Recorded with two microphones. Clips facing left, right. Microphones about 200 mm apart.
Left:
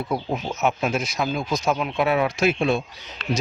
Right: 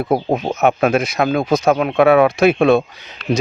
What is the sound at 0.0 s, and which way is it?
Speech, 60° right (ahead or behind).